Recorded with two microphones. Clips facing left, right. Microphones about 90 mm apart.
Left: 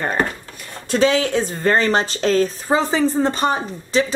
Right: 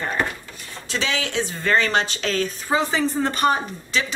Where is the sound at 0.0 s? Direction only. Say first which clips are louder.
Left 4 dB; 45° left (ahead or behind).